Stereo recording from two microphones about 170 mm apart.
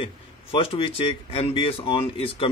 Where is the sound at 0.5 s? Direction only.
35° left (ahead or behind).